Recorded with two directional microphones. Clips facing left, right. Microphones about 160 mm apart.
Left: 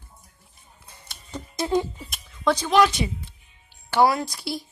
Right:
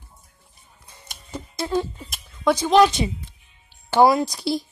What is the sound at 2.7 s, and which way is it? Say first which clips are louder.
A woman's voice: right 4 dB; 25° right (ahead or behind).